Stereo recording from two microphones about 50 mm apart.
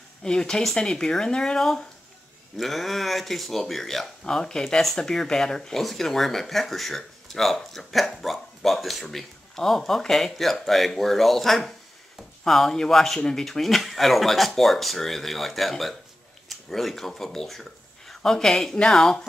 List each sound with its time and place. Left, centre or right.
0.2 s speech: centre